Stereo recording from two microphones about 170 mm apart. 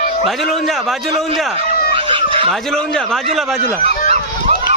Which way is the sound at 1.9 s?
30° right (ahead or behind).